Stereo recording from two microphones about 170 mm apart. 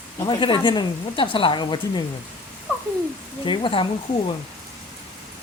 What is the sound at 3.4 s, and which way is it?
Speech, 30° left (ahead or behind).